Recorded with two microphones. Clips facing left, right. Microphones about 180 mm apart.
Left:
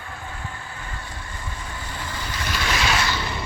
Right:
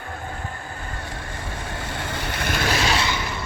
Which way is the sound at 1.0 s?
65° right (ahead or behind).